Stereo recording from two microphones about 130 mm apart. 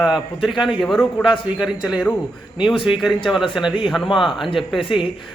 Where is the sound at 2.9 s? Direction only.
Centre (ahead or behind).